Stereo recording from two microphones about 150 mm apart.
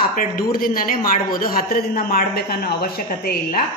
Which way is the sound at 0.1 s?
70° left (ahead or behind).